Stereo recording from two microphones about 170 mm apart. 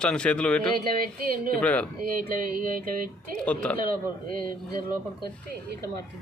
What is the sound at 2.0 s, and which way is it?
Music, 55° right (ahead or behind).